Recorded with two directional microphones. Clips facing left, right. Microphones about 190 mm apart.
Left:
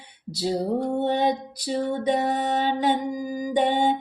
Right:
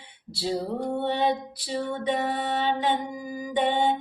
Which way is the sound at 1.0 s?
45° left (ahead or behind).